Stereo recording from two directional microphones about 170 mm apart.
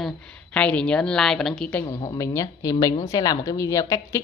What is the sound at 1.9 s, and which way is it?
A woman's voice, 20° left (ahead or behind).